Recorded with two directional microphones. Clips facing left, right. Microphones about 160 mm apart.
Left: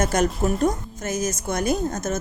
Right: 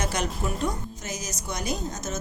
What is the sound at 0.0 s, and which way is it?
A woman's voice, 45° left (ahead or behind).